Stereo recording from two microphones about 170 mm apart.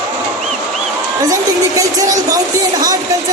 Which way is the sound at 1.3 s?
20° right (ahead or behind).